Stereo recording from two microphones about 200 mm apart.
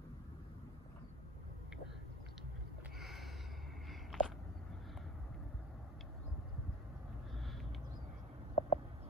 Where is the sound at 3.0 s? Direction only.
Centre (ahead or behind).